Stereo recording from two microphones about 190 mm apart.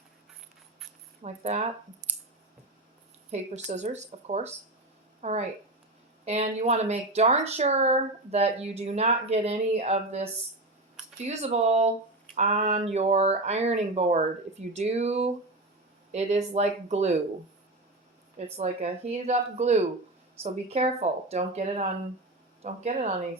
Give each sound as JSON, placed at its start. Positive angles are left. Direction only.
{"t": 1.2, "sound": "speech", "side_deg": -35}
{"t": 3.3, "sound": "speech", "side_deg": -35}
{"t": 18.3, "sound": "speech", "side_deg": -35}